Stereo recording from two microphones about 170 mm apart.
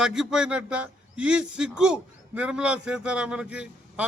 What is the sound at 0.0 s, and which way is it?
A man's voice, 5° right (ahead or behind).